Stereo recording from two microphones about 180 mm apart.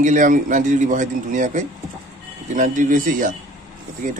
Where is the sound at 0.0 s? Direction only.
45° right (ahead or behind).